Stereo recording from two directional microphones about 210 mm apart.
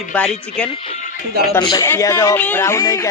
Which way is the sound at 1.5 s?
20° left (ahead or behind).